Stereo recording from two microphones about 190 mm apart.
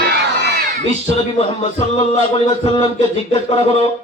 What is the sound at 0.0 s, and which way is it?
Crowd, 60° right (ahead or behind).